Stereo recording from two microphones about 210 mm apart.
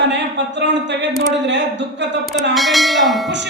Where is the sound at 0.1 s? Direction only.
55° right (ahead or behind).